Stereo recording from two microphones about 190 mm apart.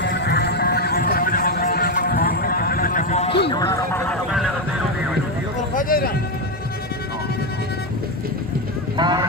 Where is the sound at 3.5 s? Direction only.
20° left (ahead or behind).